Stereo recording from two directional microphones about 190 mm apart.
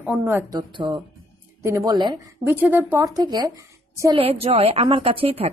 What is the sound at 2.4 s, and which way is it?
A woman's voice, 10° right (ahead or behind).